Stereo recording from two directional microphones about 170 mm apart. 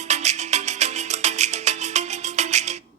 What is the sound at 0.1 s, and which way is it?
Music, 40° right (ahead or behind).